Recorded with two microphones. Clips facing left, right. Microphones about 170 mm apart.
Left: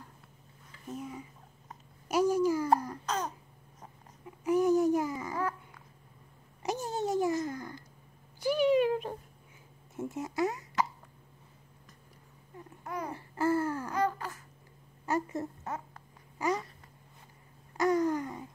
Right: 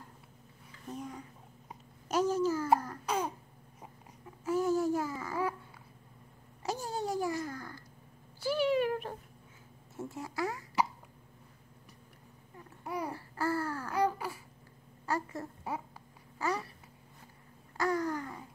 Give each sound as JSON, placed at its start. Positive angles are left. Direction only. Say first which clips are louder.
{"t": 0.8, "sound": "speech", "louder": "left 2 dB", "side_deg": 5}
{"t": 2.0, "sound": "a sound", "louder": "left 3 dB", "side_deg": 10}
{"t": 3.1, "sound": "throat clearing", "louder": "right 2 dB", "side_deg": -10}
{"t": 4.5, "sound": "babbling", "louder": "left 4 dB", "side_deg": 15}
{"t": 6.6, "sound": "babbling", "louder": "left 3 dB", "side_deg": 20}
{"t": 8.4, "sound": "cat", "louder": "left 4 dB", "side_deg": 15}
{"t": 9.9, "sound": "a sound", "louder": "left 5 dB", "side_deg": 20}
{"t": 12.8, "sound": "babbling", "louder": "right 1 dB", "side_deg": -10}
{"t": 13.1, "sound": "babbling", "louder": "left 8 dB", "side_deg": 20}
{"t": 13.9, "sound": "a sound", "louder": "right 3 dB", "side_deg": -10}
{"t": 15.0, "sound": "a sound", "louder": "left 3 dB", "side_deg": 20}
{"t": 16.3, "sound": "babbling", "louder": "left 3 dB", "side_deg": 20}
{"t": 17.7, "sound": "babbling", "louder": "left 5 dB", "side_deg": 20}